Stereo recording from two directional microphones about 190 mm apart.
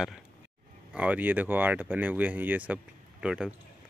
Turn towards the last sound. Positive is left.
turn(degrees=-5)  # may be behind; listen again after turning